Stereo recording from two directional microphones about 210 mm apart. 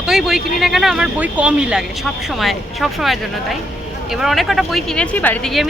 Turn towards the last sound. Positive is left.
turn(degrees=0)  # may be behind; listen again after turning